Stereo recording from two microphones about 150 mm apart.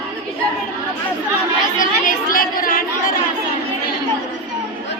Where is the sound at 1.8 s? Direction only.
65° left (ahead or behind).